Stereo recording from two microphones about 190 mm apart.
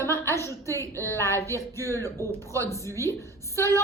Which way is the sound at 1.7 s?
15° left (ahead or behind).